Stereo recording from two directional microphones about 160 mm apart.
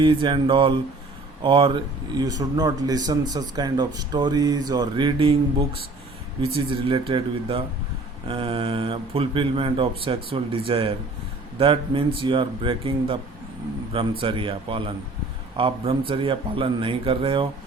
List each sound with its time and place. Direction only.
0.0 s speech: 30° right (ahead or behind)
6.7 s speech: 35° right (ahead or behind)
14.2 s speech: 35° right (ahead or behind)